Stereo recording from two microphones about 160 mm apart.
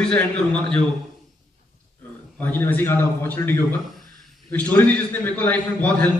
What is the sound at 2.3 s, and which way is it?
A man's voice, 10° left (ahead or behind).